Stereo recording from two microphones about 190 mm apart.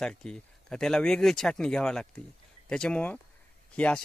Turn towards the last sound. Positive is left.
turn(degrees=5)  # may be behind; listen again after turning